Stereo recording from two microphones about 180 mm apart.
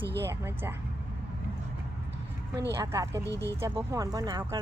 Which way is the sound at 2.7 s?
15° right (ahead or behind).